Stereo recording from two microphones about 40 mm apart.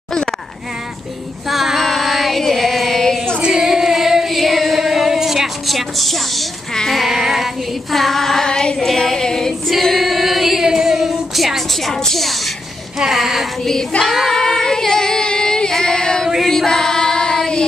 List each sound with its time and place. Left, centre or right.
1.5 s female singing: centre
1.9 s music: centre
3.4 s female singing: centre
3.9 s singing: centre
4.4 s female singing: centre
7.1 s female singing: centre
7.9 s female singing: centre
9.7 s female singing: centre
13.0 s a sound: centre
13.9 s child singing: left
14.3 s singing: centre
15.7 s female singing: centre
16.4 s singing: centre